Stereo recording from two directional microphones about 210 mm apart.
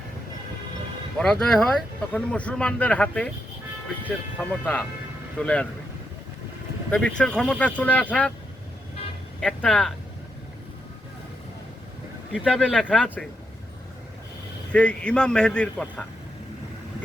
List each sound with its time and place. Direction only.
1.2 s speech: 5° left (ahead or behind)
6.9 s speech: 5° left (ahead or behind)
9.4 s speech: centre (ahead or behind)
12.3 s speech: centre (ahead or behind)
14.7 s speech: 5° left (ahead or behind)